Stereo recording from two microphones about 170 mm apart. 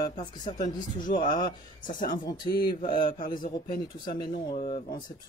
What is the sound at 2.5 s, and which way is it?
Speech, 60° left (ahead or behind).